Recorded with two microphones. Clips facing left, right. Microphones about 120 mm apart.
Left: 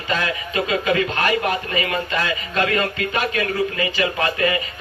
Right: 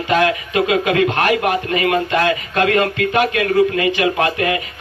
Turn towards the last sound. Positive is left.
turn(degrees=-65)  # may be behind; listen again after turning